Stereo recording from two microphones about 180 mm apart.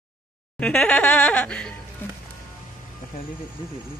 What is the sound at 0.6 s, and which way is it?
Laughter, 5° left (ahead or behind).